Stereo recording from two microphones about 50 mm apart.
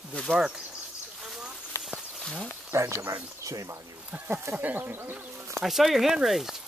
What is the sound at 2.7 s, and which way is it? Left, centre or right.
Speech, right.